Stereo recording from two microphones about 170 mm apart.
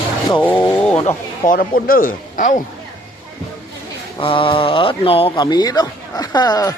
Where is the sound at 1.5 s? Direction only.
60° left (ahead or behind).